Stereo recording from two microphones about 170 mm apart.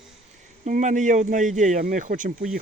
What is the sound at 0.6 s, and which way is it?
Speech, 45° right (ahead or behind).